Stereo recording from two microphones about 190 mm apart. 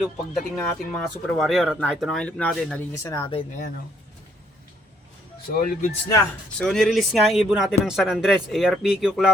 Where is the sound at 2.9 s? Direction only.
15° left (ahead or behind).